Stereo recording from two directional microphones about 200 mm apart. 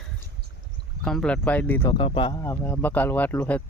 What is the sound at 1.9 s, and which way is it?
Speech, 25° left (ahead or behind).